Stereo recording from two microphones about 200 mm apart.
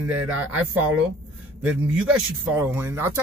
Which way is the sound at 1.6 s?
5° right (ahead or behind).